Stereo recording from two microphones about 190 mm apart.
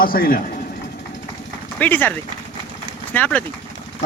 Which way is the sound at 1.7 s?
10° left (ahead or behind).